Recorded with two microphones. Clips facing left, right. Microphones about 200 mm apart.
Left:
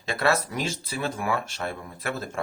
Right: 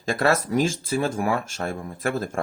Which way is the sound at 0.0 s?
45° right (ahead or behind).